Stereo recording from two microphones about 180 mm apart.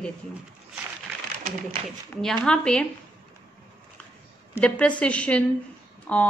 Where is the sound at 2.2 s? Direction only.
5° left (ahead or behind).